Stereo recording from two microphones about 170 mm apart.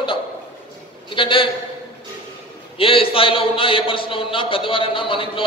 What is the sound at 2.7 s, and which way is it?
A man's voice, 30° left (ahead or behind).